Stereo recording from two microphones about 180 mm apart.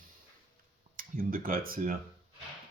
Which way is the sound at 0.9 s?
50° right (ahead or behind).